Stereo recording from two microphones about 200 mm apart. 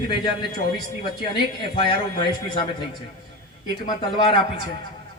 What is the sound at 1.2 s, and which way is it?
A man's voice, 25° left (ahead or behind).